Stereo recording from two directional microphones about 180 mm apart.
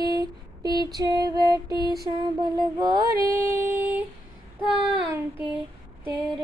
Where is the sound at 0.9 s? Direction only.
20° right (ahead or behind).